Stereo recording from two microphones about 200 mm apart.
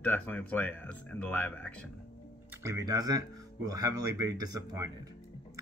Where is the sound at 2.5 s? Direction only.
15° right (ahead or behind).